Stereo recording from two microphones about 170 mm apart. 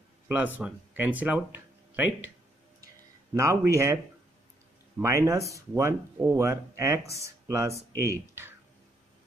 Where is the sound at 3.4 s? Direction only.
15° right (ahead or behind).